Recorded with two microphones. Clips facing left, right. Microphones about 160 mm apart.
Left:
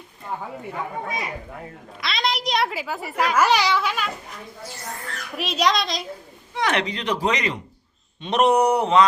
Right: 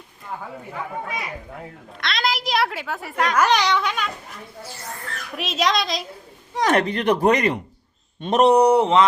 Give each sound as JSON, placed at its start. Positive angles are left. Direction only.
{"t": 2.0, "sound": "a child's voice", "side_deg": 0}
{"t": 5.4, "sound": "a child's voice", "side_deg": 0}
{"t": 6.5, "sound": "a man's voice", "side_deg": -40}
{"t": 6.8, "sound": "speech", "side_deg": -55}
{"t": 8.2, "sound": "a sound", "side_deg": -40}